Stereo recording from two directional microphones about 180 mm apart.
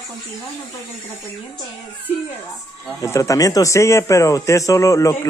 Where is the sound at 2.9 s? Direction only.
15° left (ahead or behind).